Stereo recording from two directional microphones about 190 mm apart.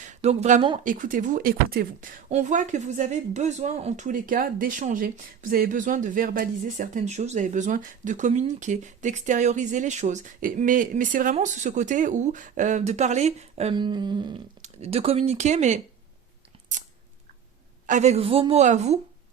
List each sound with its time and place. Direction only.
0.0 s speech: 35° right (ahead or behind)
13.7 s a sound: 25° right (ahead or behind)
14.6 s speech: 35° right (ahead or behind)
17.8 s speech: 40° right (ahead or behind)